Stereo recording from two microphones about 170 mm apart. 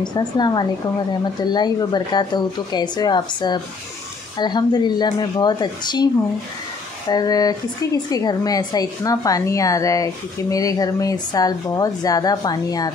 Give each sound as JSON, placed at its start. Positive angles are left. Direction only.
{"t": 0.0, "sound": "speech", "side_deg": 25}
{"t": 7.1, "sound": "speech", "side_deg": 20}